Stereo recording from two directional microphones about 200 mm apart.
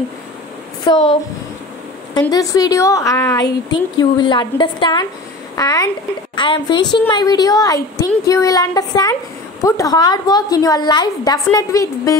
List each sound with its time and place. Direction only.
0.8 s a woman's voice: 20° left (ahead or behind)
2.1 s a woman's voice: 20° left (ahead or behind)